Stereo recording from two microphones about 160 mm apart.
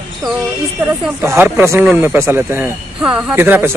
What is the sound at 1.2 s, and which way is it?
A man's voice, 15° right (ahead or behind).